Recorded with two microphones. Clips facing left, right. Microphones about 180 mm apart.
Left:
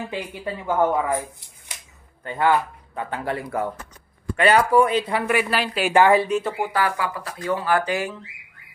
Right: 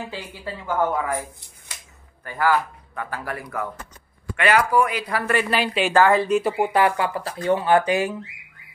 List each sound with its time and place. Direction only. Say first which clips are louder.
0.1 s speech: left 4 dB; 20° left (ahead or behind)
2.2 s speech: left 1 dB; 25° left (ahead or behind)
5.2 s speech: even; 10° left (ahead or behind)
5.9 s speech: left 1 dB; 15° left (ahead or behind)
6.4 s speech: right 4 dB; 20° right (ahead or behind)